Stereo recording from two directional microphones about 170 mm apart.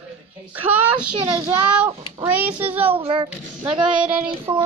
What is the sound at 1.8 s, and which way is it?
Speech, 25° right (ahead or behind).